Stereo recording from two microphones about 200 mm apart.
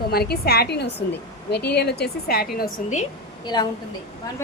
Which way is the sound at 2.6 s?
35° left (ahead or behind).